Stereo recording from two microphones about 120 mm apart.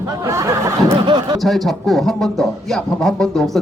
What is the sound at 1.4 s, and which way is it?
A man's voice, centre (ahead or behind).